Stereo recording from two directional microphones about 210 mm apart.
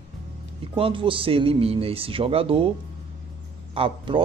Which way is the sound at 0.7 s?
25° right (ahead or behind).